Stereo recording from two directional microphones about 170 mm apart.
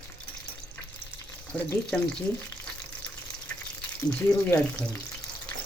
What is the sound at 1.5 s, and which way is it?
Speech, 10° left (ahead or behind).